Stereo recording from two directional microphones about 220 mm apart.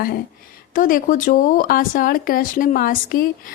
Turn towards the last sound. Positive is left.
turn(degrees=40)  # may be behind; listen again after turning